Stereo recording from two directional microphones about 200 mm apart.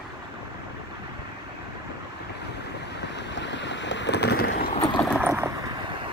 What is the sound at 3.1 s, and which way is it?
Boat, 60° left (ahead or behind).